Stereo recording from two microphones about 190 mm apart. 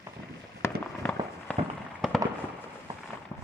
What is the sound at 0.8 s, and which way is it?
Fireworks, 5° left (ahead or behind).